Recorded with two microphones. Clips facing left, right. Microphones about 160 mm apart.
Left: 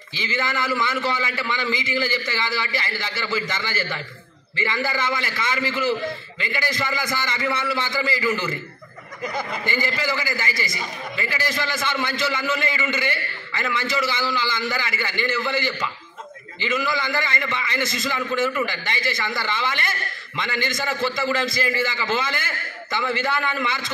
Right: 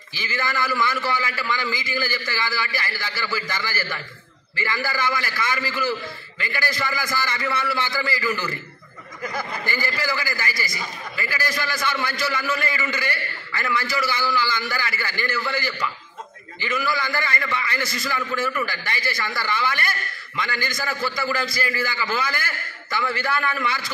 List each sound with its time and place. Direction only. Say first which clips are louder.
0.1 s a man's voice: left 1 dB; 20° left (ahead or behind)